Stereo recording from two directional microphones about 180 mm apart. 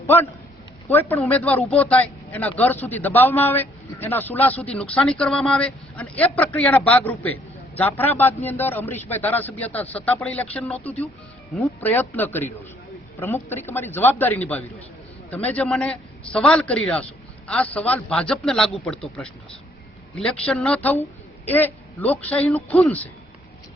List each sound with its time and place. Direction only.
0.9 s a man's voice: 10° left (ahead or behind)
20.1 s speech: 5° left (ahead or behind)